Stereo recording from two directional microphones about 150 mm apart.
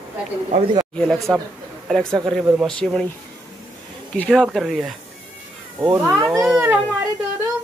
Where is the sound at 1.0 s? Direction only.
Centre (ahead or behind).